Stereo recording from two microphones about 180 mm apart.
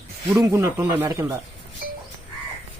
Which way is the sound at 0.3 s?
15° right (ahead or behind).